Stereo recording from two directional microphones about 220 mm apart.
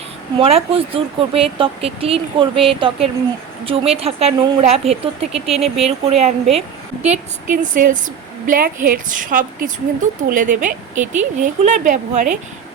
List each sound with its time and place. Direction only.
0.3 s a woman's voice: 25° right (ahead or behind)